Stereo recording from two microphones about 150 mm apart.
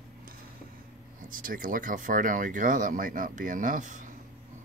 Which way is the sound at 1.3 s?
65° right (ahead or behind).